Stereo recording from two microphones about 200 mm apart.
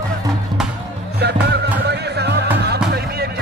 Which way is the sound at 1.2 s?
55° right (ahead or behind).